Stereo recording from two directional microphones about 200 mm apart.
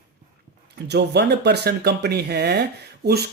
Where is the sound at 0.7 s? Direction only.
55° right (ahead or behind).